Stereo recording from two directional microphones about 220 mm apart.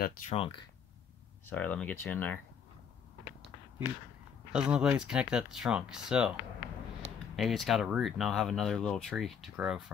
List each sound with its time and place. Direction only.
0.0 s speech: 30° left (ahead or behind)
1.4 s speech: 5° left (ahead or behind)
4.5 s speech: 5° right (ahead or behind)
7.3 s speech: centre (ahead or behind)